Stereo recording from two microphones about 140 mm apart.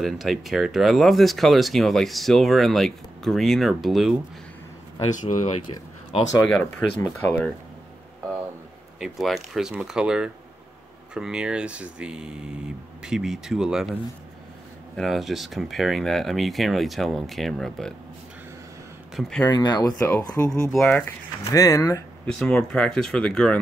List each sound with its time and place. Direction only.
0.0 s speech: centre (ahead or behind)
5.1 s speech: 65° left (ahead or behind)
6.4 s speech: 5° left (ahead or behind)
9.0 s speech: centre (ahead or behind)
15.0 s speech: centre (ahead or behind)
19.1 s speech: 5° left (ahead or behind)
19.4 s speech: 30° left (ahead or behind)
20.0 s speech: 10° left (ahead or behind)
21.5 s speech: 25° left (ahead or behind)
22.2 s speech: 5° left (ahead or behind)